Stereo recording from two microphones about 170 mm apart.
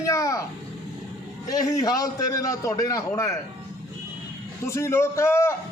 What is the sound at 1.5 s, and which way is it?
A man's voice, 20° left (ahead or behind).